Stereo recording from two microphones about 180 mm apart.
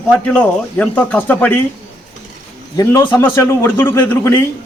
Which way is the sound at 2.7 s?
15° left (ahead or behind).